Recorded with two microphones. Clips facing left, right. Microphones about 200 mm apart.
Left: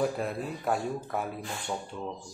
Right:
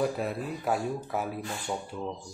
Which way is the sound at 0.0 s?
Centre (ahead or behind).